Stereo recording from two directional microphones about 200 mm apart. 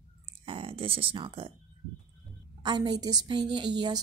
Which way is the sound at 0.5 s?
25° right (ahead or behind).